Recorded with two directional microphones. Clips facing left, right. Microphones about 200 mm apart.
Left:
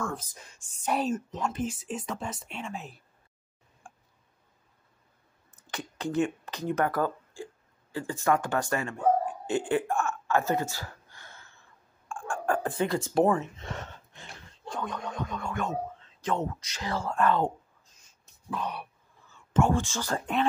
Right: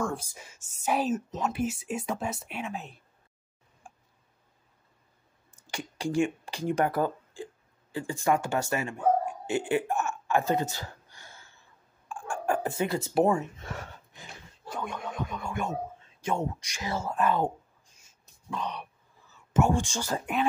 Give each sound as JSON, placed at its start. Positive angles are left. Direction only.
{"t": 0.0, "sound": "a woman's voice", "side_deg": -10}
{"t": 3.8, "sound": "tick", "side_deg": -5}
{"t": 5.5, "sound": "a sound", "side_deg": -10}
{"t": 6.5, "sound": "speech", "side_deg": -15}
{"t": 9.2, "sound": "dog", "side_deg": -10}
{"t": 10.0, "sound": "a sound", "side_deg": -15}
{"t": 12.6, "sound": "speech", "side_deg": -10}
{"t": 13.2, "sound": "speech", "side_deg": -20}
{"t": 13.6, "sound": "a sound", "side_deg": -5}
{"t": 16.5, "sound": "speech", "side_deg": -10}
{"t": 17.2, "sound": "a sound", "side_deg": -10}
{"t": 18.5, "sound": "speech", "side_deg": 5}
{"t": 19.3, "sound": "speech", "side_deg": -10}